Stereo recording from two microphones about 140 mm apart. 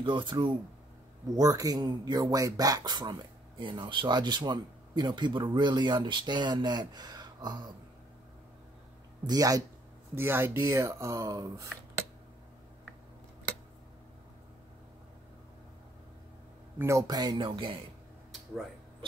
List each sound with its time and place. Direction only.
0.0 s speech: 35° right (ahead or behind)
9.2 s speech: 25° right (ahead or behind)
10.1 s speech: 15° right (ahead or behind)
16.7 s speech: 20° right (ahead or behind); by 17.7 s 35° right (ahead or behind)